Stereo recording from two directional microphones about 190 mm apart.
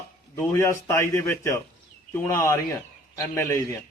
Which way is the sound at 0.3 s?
10° left (ahead or behind).